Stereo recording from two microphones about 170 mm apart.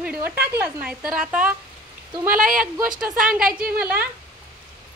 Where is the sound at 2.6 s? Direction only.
5° right (ahead or behind).